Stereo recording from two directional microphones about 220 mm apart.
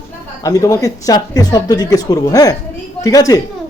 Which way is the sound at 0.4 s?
15° left (ahead or behind).